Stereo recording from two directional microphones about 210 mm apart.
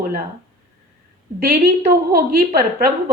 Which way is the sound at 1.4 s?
50° right (ahead or behind).